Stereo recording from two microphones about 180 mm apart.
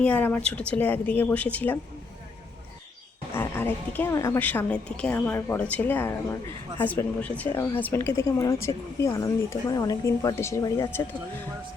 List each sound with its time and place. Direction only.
0.0 s a woman's voice: 10° left (ahead or behind)
3.3 s a woman's voice: 10° left (ahead or behind)